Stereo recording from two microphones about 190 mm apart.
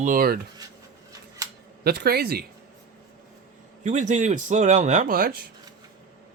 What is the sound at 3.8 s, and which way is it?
A man's voice, 40° right (ahead or behind).